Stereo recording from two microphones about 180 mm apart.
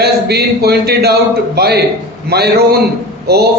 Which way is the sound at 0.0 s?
65° right (ahead or behind).